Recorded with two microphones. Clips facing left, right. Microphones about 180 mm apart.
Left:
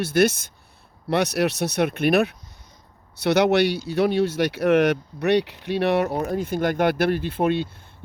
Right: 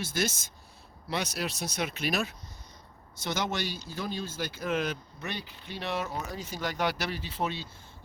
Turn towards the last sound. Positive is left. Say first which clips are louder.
# left 12 dB
turn(degrees=55)  # may be behind; listen again after turning